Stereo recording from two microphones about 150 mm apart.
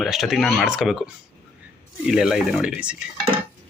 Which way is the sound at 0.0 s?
Centre (ahead or behind).